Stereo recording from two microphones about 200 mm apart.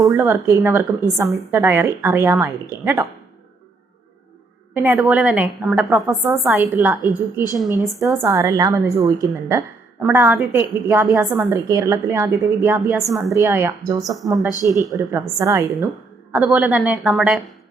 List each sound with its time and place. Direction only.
0.0 s a woman's voice: 10° right (ahead or behind)
4.7 s a woman's voice: 10° right (ahead or behind)